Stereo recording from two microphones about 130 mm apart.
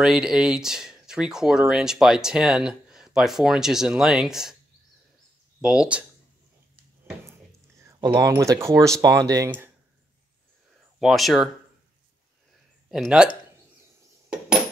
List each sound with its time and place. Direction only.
0.0 s speech: 5° right (ahead or behind)
5.6 s speech: 5° right (ahead or behind)
7.8 s keys jangling: 30° right (ahead or behind)
8.4 s speech: 25° right (ahead or behind)
11.0 s speech: centre (ahead or behind)
12.9 s speech: 5° right (ahead or behind)